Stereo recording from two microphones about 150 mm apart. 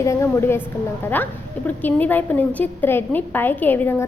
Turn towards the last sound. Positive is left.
turn(degrees=15)  # may be behind; listen again after turning